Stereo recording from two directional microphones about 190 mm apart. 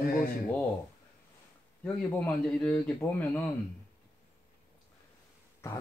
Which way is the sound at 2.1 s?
10° left (ahead or behind).